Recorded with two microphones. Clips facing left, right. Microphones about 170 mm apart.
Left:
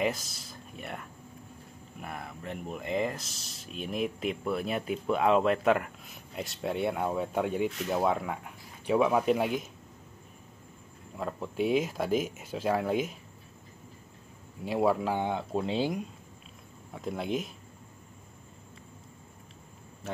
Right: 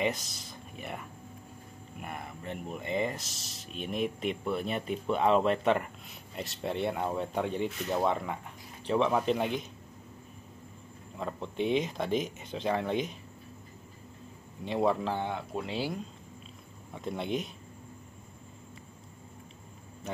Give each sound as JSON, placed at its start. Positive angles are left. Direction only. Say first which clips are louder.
{"t": 0.0, "sound": "speech", "louder": "left 1 dB", "side_deg": 0}
{"t": 11.1, "sound": "speech", "louder": "left 2 dB", "side_deg": 5}
{"t": 14.6, "sound": "a man's voice", "louder": "left 1 dB", "side_deg": 5}
{"t": 15.3, "sound": "speech", "louder": "left 4 dB", "side_deg": 30}
{"t": 16.9, "sound": "speech", "louder": "left 1 dB", "side_deg": 0}